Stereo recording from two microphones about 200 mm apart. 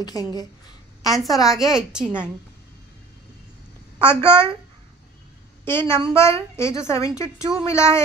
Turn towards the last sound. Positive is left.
turn(degrees=15)  # may be behind; listen again after turning